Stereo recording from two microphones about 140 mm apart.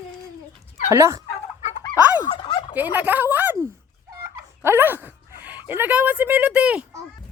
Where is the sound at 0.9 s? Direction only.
20° right (ahead or behind).